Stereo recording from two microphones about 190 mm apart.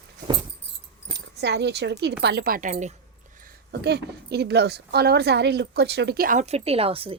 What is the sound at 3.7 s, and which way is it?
A woman's voice, 60° right (ahead or behind).